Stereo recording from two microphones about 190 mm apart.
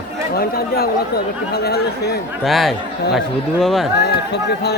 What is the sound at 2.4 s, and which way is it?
Speech, centre (ahead or behind).